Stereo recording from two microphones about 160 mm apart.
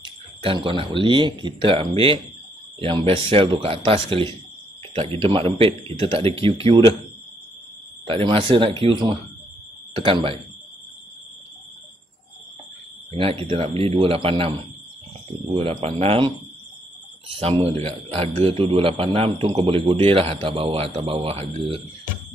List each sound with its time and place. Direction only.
0.0 s speech: 30° right (ahead or behind)
8.1 s speech: 35° right (ahead or behind)
13.1 s speech: 35° right (ahead or behind)
15.5 s speech: 35° right (ahead or behind)
17.4 s speech: 40° right (ahead or behind)